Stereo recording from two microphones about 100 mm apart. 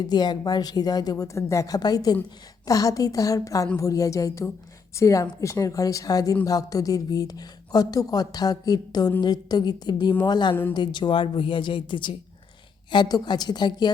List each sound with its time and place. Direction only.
0.0 s a woman's voice: 45° left (ahead or behind)
10.5 s speech: 20° left (ahead or behind)
10.8 s a woman's voice: 50° left (ahead or behind)